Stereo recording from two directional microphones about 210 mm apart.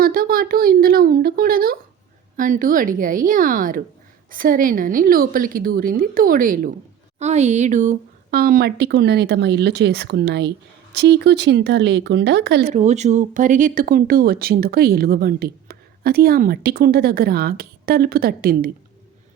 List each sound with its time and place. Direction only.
0.0 s a woman's voice: 45° right (ahead or behind)
12.7 s speech: 35° right (ahead or behind)